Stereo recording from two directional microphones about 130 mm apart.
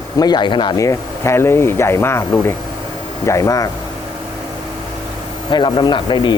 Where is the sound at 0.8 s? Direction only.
20° left (ahead or behind).